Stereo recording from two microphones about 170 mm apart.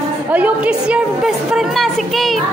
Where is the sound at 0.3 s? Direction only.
10° right (ahead or behind).